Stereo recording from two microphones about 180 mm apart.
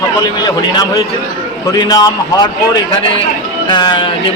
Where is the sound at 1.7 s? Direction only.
20° left (ahead or behind).